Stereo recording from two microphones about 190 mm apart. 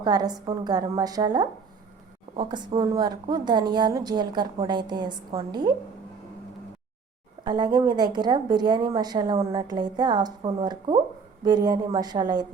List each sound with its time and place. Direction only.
0.0 s a woman's voice: 20° right (ahead or behind)
7.4 s a woman's voice: 20° right (ahead or behind)